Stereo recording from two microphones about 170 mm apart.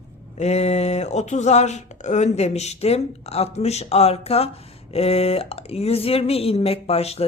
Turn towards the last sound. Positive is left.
turn(degrees=35)  # may be behind; listen again after turning